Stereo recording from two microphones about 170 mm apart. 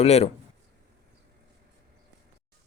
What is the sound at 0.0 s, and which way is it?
Speech, 40° left (ahead or behind).